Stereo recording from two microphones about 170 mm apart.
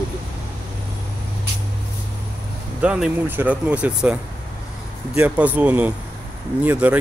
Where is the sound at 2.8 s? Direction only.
5° right (ahead or behind).